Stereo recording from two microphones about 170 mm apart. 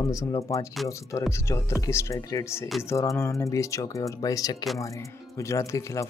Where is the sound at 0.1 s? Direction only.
20° left (ahead or behind).